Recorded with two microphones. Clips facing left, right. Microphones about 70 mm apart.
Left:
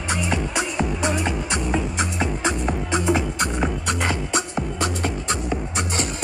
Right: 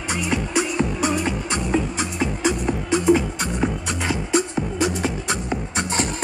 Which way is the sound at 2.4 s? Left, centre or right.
Left.